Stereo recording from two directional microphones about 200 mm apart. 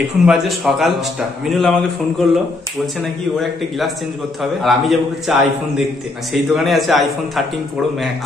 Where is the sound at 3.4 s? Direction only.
Centre (ahead or behind).